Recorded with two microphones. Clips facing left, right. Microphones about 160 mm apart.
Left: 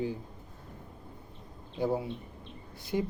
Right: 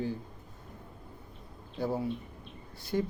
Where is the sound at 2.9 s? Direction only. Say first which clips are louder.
Even; 15° left (ahead or behind).